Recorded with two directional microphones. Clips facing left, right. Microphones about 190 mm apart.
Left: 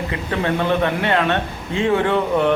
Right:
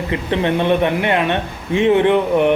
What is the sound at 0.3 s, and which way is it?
A man's voice, 25° right (ahead or behind).